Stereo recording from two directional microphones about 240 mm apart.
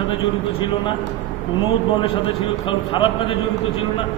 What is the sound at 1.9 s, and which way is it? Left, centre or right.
A man's voice, left.